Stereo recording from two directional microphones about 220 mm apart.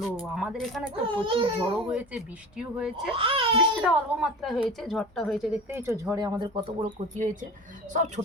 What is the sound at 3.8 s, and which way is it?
A woman's voice, centre (ahead or behind).